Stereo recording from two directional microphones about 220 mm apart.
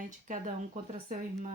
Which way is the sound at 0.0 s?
35° right (ahead or behind).